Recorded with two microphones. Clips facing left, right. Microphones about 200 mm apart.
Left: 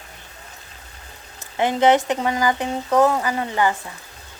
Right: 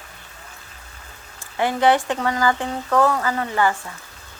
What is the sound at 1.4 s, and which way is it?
Speech, 20° left (ahead or behind).